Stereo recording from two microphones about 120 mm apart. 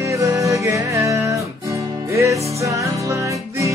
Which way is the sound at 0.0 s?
25° right (ahead or behind).